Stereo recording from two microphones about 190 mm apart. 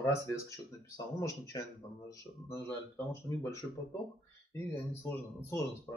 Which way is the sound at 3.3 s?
15° left (ahead or behind).